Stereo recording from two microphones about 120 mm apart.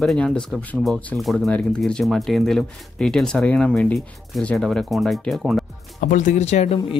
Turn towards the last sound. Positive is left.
turn(degrees=65)  # may be behind; listen again after turning